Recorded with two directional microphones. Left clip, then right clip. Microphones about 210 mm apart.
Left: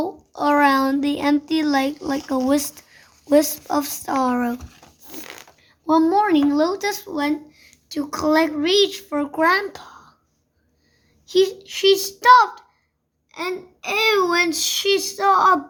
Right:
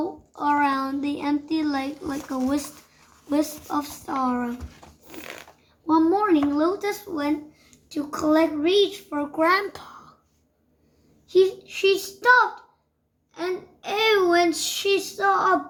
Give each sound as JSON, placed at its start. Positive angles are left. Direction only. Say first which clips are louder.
{"t": 0.0, "sound": "a child's voice", "louder": "left 4 dB", "side_deg": 50}
{"t": 5.2, "sound": "a sound", "louder": "right 1 dB", "side_deg": 30}
{"t": 5.8, "sound": "speech", "louder": "left 3 dB", "side_deg": 55}
{"t": 9.4, "sound": "a child's voice", "louder": "left 2 dB", "side_deg": 30}
{"t": 11.3, "sound": "speech", "louder": "left 1 dB", "side_deg": 45}
{"t": 14.1, "sound": "speech", "louder": "even", "side_deg": 45}